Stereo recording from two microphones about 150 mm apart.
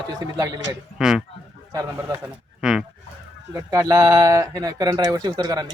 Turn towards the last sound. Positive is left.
turn(degrees=-25)  # may be behind; listen again after turning